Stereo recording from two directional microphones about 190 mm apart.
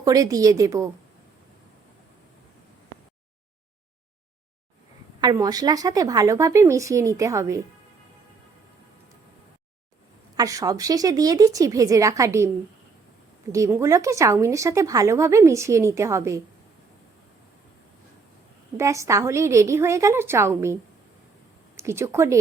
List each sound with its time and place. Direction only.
0.0 s speech: 20° right (ahead or behind)
5.2 s speech: 20° right (ahead or behind)
10.3 s speech: 20° right (ahead or behind)
13.5 s speech: 15° right (ahead or behind)
18.8 s speech: 15° right (ahead or behind)
21.8 s speech: 15° right (ahead or behind)